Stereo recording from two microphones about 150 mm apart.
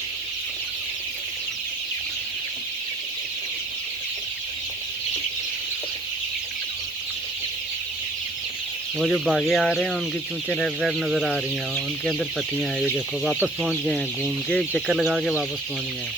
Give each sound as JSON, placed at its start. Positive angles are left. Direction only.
{"t": 9.0, "sound": "speech", "side_deg": 0}
{"t": 13.6, "sound": "speech", "side_deg": 0}